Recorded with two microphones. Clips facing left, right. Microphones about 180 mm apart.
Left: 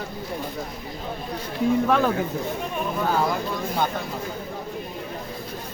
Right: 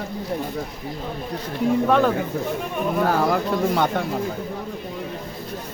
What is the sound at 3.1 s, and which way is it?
Speech, 65° right (ahead or behind).